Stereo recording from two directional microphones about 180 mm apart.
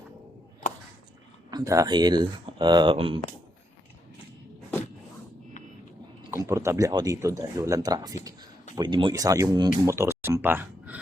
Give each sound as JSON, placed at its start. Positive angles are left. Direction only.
{"t": 1.5, "sound": "speech", "side_deg": -20}
{"t": 6.3, "sound": "speech", "side_deg": -15}